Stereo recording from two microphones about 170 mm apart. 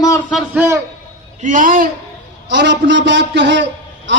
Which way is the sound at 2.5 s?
90° right.